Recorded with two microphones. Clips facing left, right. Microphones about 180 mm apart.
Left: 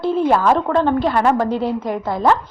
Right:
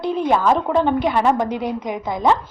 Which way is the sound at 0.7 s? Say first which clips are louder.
Left 1 dB; 10° right (ahead or behind).